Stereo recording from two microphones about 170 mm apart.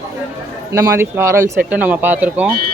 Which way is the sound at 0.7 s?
15° right (ahead or behind).